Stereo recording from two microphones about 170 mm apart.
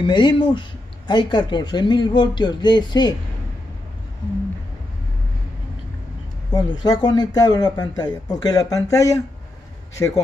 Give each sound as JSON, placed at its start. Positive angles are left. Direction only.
{"t": 0.0, "sound": "speech", "side_deg": 25}
{"t": 6.5, "sound": "speech", "side_deg": 25}